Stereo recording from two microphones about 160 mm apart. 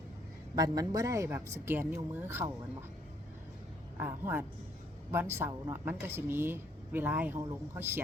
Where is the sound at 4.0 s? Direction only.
15° right (ahead or behind).